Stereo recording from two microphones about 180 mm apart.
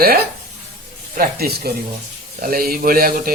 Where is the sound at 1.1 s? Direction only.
55° right (ahead or behind).